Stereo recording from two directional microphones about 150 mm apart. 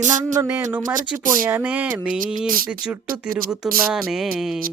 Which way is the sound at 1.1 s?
15° right (ahead or behind).